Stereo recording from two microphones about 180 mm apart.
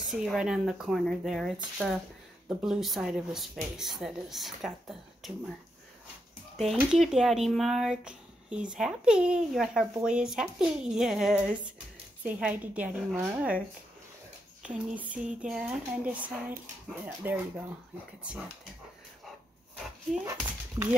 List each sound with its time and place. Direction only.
0.0 s speech: centre (ahead or behind)
6.5 s speech: centre (ahead or behind)
14.6 s speech: 5° right (ahead or behind)
20.1 s speech: 5° right (ahead or behind)
20.8 s speech: 15° right (ahead or behind)